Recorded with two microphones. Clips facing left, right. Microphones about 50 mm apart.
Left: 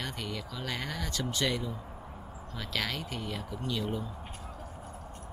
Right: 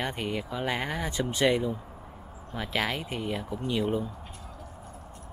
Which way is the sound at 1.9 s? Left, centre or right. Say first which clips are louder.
Even; centre.